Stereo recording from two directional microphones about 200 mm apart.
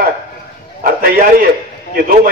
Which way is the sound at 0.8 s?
50° right (ahead or behind).